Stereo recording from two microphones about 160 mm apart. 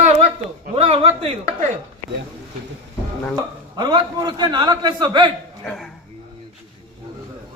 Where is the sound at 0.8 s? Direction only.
40° right (ahead or behind).